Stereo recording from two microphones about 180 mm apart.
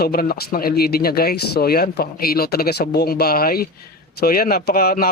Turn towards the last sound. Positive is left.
turn(degrees=55)  # may be behind; listen again after turning